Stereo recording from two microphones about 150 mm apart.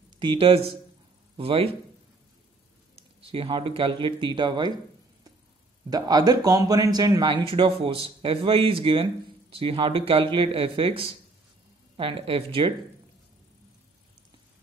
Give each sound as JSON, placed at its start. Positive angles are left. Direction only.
{"t": 0.2, "sound": "speech", "side_deg": -35}
{"t": 3.0, "sound": "speech", "side_deg": -40}
{"t": 5.9, "sound": "speech", "side_deg": -25}